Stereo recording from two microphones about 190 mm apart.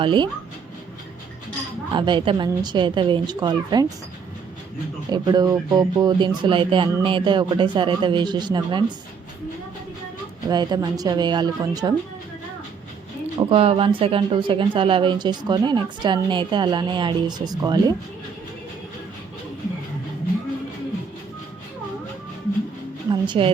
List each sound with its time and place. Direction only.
0.0 s speech: 25° right (ahead or behind)
1.9 s speech: 25° right (ahead or behind)
5.1 s speech: 20° right (ahead or behind)
10.5 s speech: 20° right (ahead or behind)
13.5 s speech: 30° right (ahead or behind)
23.2 s speech: 25° right (ahead or behind)